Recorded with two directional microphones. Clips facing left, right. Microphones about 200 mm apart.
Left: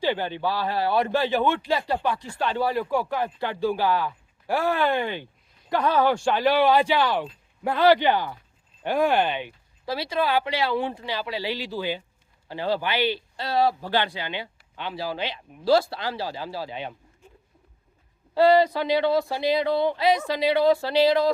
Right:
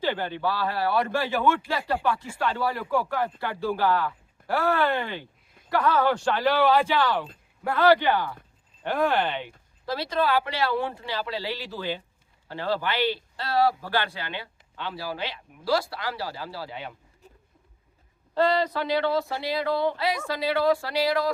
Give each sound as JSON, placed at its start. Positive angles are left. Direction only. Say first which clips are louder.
{"t": 0.0, "sound": "speech", "louder": "left 2 dB", "side_deg": 15}
{"t": 18.3, "sound": "speech", "louder": "left 5 dB", "side_deg": 10}